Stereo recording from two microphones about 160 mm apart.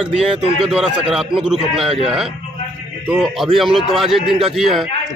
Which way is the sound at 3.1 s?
Centre (ahead or behind).